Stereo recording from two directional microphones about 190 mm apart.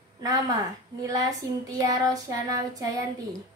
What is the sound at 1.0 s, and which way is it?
Child singing, 20° right (ahead or behind).